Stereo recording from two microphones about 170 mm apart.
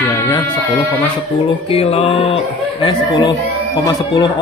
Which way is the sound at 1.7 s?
35° left (ahead or behind).